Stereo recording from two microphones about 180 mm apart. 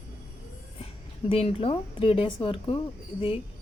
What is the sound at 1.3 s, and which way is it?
Speech, 35° left (ahead or behind).